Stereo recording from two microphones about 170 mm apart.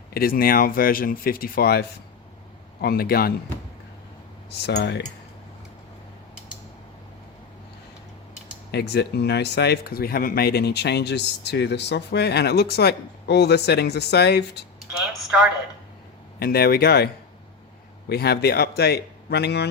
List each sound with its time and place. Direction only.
0.1 s speech: 60° left (ahead or behind)
2.8 s speech: 65° left (ahead or behind)
4.6 s speech: 80° left
8.7 s speech: 75° left (ahead or behind)
16.4 s speech: 60° left (ahead or behind)
18.1 s speech: 70° left (ahead or behind)